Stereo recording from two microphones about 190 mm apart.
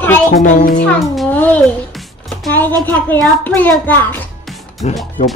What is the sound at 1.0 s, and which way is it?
Speech, 5° left (ahead or behind).